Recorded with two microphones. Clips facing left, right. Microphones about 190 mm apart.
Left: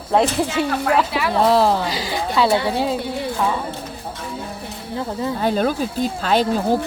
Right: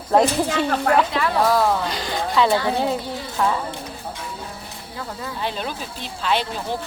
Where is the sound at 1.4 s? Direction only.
25° left (ahead or behind).